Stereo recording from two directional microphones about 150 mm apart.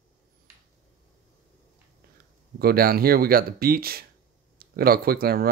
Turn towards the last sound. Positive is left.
turn(degrees=-90)